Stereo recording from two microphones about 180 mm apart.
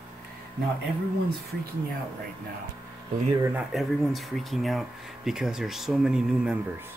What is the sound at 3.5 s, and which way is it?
Speech, centre (ahead or behind).